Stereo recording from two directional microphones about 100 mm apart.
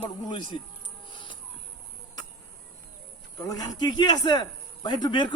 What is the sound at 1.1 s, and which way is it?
Bird, 55° left (ahead or behind).